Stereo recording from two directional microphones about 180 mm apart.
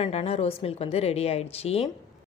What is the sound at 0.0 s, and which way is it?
Speech, 35° left (ahead or behind).